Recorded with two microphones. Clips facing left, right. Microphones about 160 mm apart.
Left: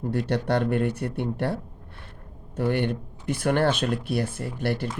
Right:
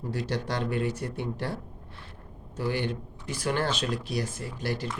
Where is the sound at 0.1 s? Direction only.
60° left (ahead or behind).